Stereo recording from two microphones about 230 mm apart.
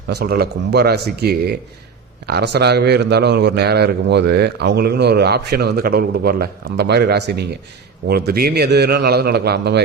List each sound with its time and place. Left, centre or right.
0.1 s a man's voice: right